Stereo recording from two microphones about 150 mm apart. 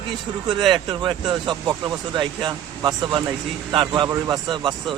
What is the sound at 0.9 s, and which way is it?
Speech, 30° right (ahead or behind).